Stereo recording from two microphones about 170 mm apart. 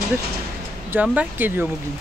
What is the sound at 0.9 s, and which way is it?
Speech, 5° right (ahead or behind).